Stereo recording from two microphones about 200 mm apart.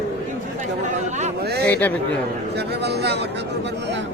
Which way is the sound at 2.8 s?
55° right (ahead or behind).